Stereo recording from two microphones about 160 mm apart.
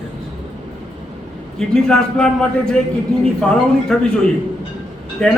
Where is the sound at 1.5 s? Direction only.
5° left (ahead or behind).